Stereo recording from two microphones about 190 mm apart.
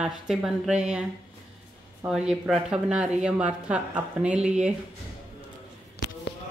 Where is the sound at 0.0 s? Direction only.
5° right (ahead or behind).